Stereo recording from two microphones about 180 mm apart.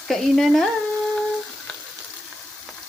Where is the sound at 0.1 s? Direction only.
Centre (ahead or behind).